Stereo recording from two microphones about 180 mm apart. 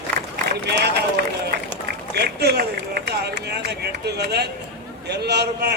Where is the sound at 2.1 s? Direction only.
65° right (ahead or behind).